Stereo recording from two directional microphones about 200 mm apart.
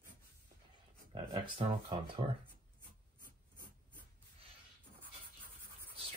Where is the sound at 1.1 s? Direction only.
25° right (ahead or behind).